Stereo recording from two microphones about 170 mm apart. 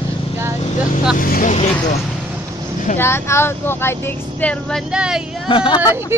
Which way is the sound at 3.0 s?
15° left (ahead or behind).